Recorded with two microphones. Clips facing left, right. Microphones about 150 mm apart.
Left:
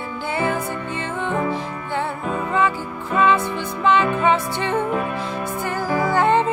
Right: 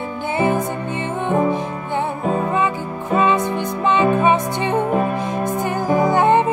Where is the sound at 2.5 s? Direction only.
20° right (ahead or behind).